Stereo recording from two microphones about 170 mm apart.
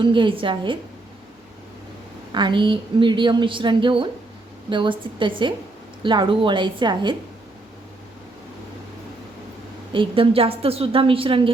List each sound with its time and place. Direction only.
0.0 s a woman's voice: 30° right (ahead or behind)
2.3 s a woman's voice: 25° right (ahead or behind)
9.9 s a woman's voice: 30° right (ahead or behind)